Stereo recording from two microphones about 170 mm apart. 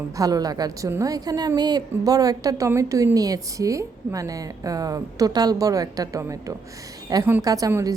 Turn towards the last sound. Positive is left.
turn(degrees=-20)  # may be behind; listen again after turning